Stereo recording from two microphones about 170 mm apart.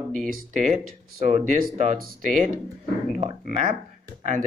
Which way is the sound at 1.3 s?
45° right (ahead or behind).